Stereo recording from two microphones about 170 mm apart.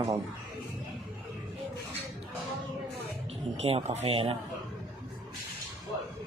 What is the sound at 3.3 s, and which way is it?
Speech, 35° right (ahead or behind).